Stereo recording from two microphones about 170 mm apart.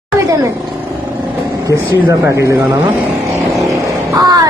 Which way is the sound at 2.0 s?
15° right (ahead or behind).